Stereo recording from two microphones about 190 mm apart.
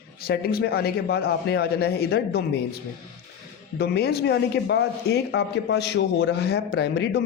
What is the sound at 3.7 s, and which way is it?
Speech, 60° left (ahead or behind).